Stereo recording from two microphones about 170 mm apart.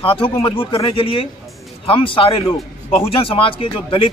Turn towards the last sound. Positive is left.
turn(degrees=30)  # may be behind; listen again after turning